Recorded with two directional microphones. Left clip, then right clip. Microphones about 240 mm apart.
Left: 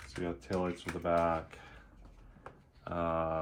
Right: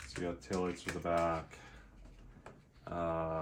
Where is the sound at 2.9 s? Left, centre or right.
Left.